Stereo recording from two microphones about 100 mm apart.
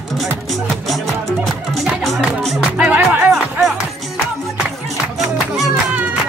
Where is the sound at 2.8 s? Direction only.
15° right (ahead or behind).